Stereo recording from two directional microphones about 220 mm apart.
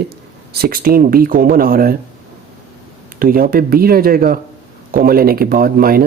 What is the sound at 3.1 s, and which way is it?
Speech, 40° right (ahead or behind).